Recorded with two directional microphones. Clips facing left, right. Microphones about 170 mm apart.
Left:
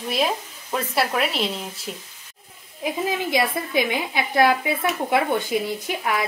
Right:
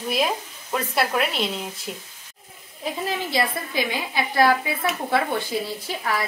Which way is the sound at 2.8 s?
20° left (ahead or behind).